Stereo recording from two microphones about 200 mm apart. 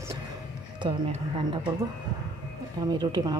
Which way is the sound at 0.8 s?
25° right (ahead or behind).